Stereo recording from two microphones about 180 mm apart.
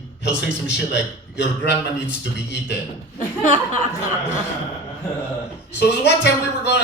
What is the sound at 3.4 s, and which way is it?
Speech, 45° left (ahead or behind).